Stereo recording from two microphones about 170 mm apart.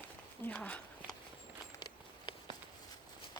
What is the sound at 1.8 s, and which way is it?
Walk, 25° left (ahead or behind).